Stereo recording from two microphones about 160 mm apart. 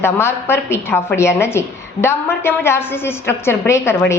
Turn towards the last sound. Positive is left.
turn(degrees=15)  # may be behind; listen again after turning